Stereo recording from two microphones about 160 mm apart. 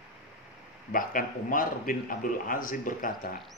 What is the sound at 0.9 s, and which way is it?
A man's voice, 60° left (ahead or behind).